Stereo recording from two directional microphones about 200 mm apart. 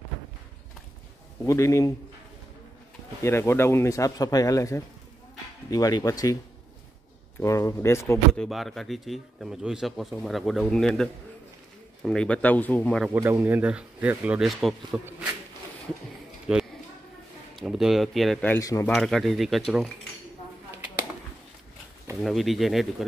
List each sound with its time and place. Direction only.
1.4 s speech: 15° left (ahead or behind)
3.2 s speech: 15° left (ahead or behind)
7.3 s speech: 15° left (ahead or behind)
8.3 s speech: centre (ahead or behind)
13.0 s speech: 10° right (ahead or behind)
16.5 s speech: 5° right (ahead or behind); by 18.9 s 15° left (ahead or behind)
18.9 s speech: centre (ahead or behind)
22.2 s speech: centre (ahead or behind)